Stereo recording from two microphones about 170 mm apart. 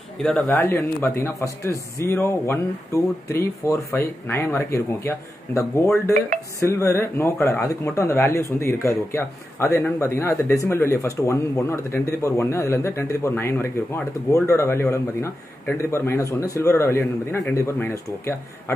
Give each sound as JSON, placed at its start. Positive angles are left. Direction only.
{"t": 0.2, "sound": "a man's voice", "side_deg": 5}
{"t": 0.5, "sound": "speech", "side_deg": 15}